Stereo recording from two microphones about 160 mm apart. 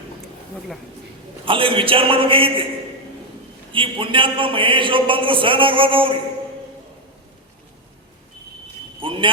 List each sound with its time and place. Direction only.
1.5 s a man's voice: 35° right (ahead or behind)
3.7 s a man's voice: 30° right (ahead or behind)
9.0 s a sound: 30° right (ahead or behind)